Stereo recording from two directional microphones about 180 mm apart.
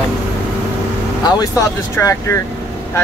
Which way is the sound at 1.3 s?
20° left (ahead or behind).